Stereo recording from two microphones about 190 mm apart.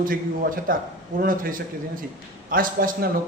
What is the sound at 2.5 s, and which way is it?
Speech, 50° right (ahead or behind).